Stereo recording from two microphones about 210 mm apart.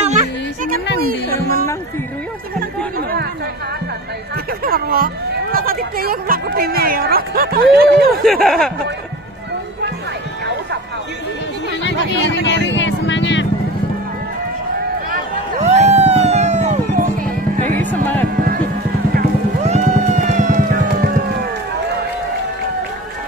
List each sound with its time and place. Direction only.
0.0 s music: 35° right (ahead or behind)
3.0 s chatter: 50° right (ahead or behind)
4.6 s speech: 45° right (ahead or behind)
8.5 s speech: centre (ahead or behind)
12.1 s vehicle: 60° left (ahead or behind)
15.6 s music: 35° right (ahead or behind)
17.7 s music: 10° left (ahead or behind)
19.6 s music: 35° right (ahead or behind)